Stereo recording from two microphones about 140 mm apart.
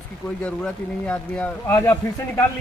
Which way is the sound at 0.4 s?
10° left (ahead or behind).